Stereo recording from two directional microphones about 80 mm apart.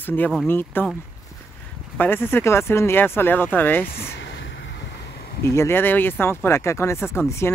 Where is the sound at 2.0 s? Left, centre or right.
Left.